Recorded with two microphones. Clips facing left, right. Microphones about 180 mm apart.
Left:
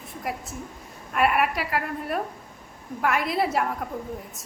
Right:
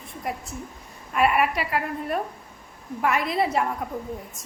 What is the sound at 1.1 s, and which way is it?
A woman's voice, centre (ahead or behind).